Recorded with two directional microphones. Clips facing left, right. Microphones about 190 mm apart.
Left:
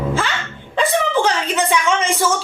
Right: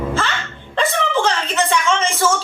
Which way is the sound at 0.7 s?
10° left (ahead or behind).